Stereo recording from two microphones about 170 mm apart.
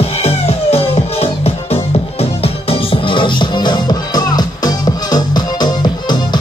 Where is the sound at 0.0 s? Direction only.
35° left (ahead or behind).